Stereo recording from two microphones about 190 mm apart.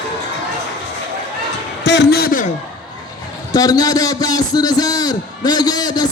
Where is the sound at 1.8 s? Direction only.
65° left (ahead or behind); by 2.5 s 50° left (ahead or behind).